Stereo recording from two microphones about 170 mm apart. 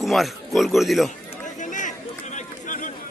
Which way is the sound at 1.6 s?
50° left (ahead or behind).